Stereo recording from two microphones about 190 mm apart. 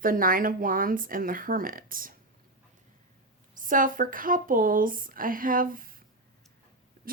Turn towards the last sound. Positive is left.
turn(degrees=-50)  # may be behind; listen again after turning